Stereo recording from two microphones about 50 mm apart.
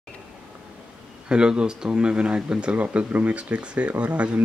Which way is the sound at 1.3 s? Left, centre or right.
Centre.